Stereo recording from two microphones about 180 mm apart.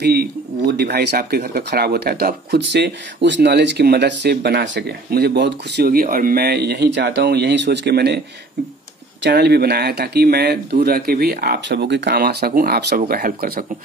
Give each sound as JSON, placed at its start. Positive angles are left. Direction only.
{"t": 0.0, "sound": "speech", "side_deg": -60}
{"t": 9.2, "sound": "speech", "side_deg": -65}